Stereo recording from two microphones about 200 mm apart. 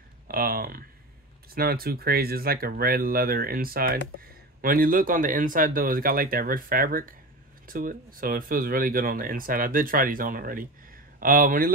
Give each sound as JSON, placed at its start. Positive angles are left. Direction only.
{"t": 0.3, "sound": "speech", "side_deg": -45}